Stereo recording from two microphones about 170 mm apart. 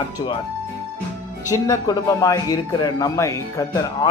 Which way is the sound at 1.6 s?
20° left (ahead or behind).